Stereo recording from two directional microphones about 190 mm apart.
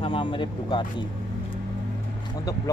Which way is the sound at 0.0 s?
25° left (ahead or behind).